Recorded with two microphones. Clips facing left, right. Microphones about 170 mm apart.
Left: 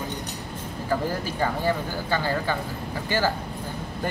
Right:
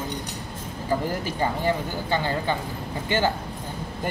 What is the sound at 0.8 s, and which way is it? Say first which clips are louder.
Speech: right 1 dB; 15° right (ahead or behind).